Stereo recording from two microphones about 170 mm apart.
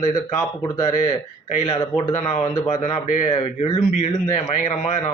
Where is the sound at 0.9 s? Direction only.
45° left (ahead or behind).